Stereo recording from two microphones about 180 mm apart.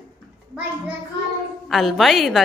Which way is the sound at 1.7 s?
Centre (ahead or behind).